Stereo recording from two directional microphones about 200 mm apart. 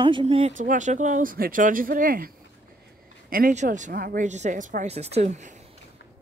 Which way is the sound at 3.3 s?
40° right (ahead or behind).